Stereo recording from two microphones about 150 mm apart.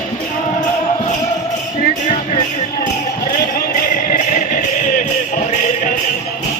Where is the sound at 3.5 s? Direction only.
75° left (ahead or behind); by 5.9 s 55° left (ahead or behind).